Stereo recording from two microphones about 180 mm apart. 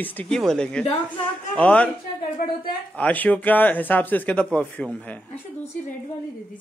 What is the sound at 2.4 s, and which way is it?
Speech, 55° left (ahead or behind).